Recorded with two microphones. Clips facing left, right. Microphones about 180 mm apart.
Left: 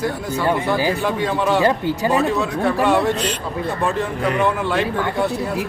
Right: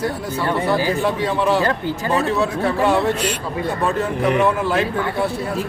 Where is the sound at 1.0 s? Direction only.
Centre (ahead or behind).